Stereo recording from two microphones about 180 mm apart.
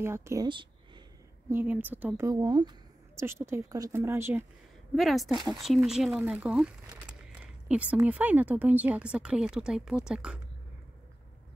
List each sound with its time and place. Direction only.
0.0 s speech: 15° right (ahead or behind)
0.5 s a sound: 25° right (ahead or behind)
1.5 s speech: 10° right (ahead or behind)
2.2 s speech: 20° right (ahead or behind)
4.9 s speech: centre (ahead or behind)